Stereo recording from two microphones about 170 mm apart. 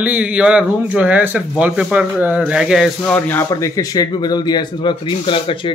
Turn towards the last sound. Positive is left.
turn(degrees=30)  # may be behind; listen again after turning